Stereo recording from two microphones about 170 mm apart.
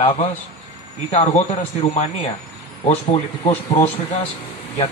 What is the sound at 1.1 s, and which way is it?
Speech, 40° left (ahead or behind).